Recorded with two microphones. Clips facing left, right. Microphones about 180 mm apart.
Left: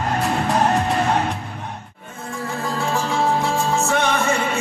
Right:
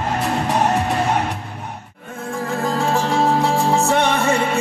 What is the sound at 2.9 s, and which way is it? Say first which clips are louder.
Music: right 2 dB; 40° right (ahead or behind).